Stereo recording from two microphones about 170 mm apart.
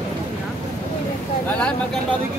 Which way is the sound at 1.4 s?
5° left (ahead or behind).